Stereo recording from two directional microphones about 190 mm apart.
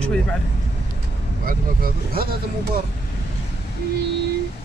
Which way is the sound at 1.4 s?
50° right (ahead or behind).